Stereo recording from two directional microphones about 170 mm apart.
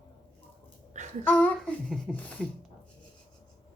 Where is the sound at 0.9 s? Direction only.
45° right (ahead or behind).